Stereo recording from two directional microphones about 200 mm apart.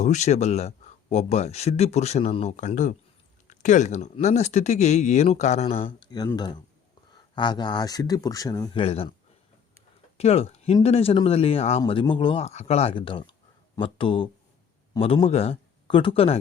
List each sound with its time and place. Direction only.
0.0 s speech: 35° left (ahead or behind)
10.2 s speech: 30° left (ahead or behind)